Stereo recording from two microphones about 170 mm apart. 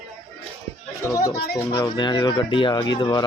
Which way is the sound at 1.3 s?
65° left (ahead or behind).